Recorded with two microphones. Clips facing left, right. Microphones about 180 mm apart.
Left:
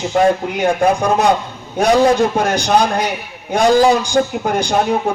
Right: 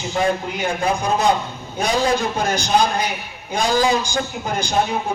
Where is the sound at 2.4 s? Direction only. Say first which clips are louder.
Left 4 dB; 75° left (ahead or behind).